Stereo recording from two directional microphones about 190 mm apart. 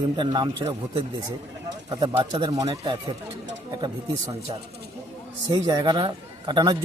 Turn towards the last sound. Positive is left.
turn(degrees=-25)  # may be behind; listen again after turning